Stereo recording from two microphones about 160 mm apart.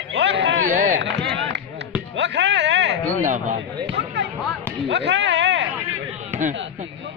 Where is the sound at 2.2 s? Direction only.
90° right.